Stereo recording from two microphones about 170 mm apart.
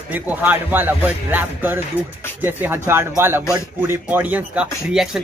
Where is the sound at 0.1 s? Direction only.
10° right (ahead or behind).